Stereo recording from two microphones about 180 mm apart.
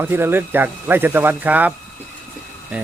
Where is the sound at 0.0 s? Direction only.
10° right (ahead or behind).